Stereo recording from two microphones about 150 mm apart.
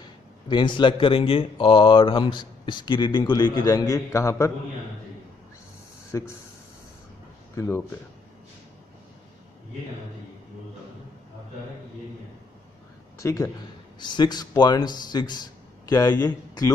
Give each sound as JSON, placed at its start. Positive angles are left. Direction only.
{"t": 0.0, "sound": "speech", "side_deg": 30}
{"t": 6.1, "sound": "a man's voice", "side_deg": 20}
{"t": 7.5, "sound": "speech", "side_deg": 20}
{"t": 13.2, "sound": "a man's voice", "side_deg": 20}
{"t": 13.9, "sound": "speech", "side_deg": 30}